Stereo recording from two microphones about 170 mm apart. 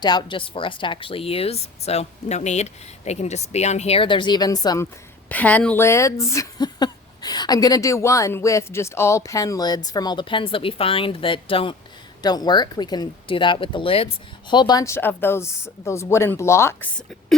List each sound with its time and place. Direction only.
0.0 s speech: 25° left (ahead or behind)
5.3 s a woman's voice: 10° left (ahead or behind)